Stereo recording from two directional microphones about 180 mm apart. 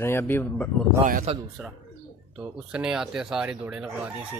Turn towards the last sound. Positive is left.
turn(degrees=-5)  # may be behind; listen again after turning